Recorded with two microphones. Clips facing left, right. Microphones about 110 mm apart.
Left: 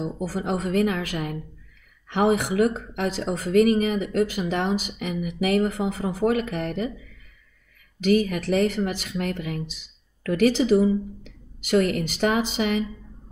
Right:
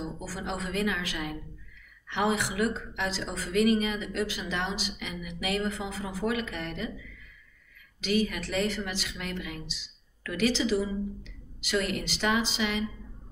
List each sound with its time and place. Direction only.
0.0 s a woman's voice: 50° left (ahead or behind)
8.0 s a woman's voice: 50° left (ahead or behind)